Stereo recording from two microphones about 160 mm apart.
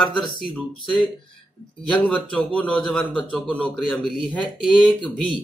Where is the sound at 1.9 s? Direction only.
10° left (ahead or behind).